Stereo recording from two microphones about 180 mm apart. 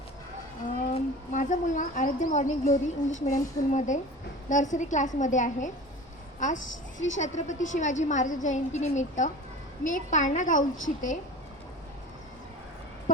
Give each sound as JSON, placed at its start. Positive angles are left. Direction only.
{"t": 0.9, "sound": "a woman's voice", "side_deg": 45}
{"t": 7.2, "sound": "a woman's voice", "side_deg": 40}